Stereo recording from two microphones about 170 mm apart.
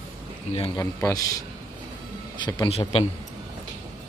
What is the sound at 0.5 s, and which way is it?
Speech, 25° left (ahead or behind).